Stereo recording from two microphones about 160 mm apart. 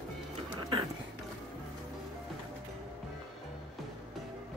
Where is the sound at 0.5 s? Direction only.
35° right (ahead or behind).